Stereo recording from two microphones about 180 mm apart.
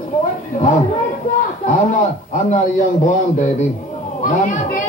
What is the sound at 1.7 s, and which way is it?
A man's voice, 45° left (ahead or behind).